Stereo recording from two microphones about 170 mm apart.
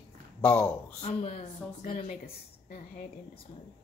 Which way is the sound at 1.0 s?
35° left (ahead or behind).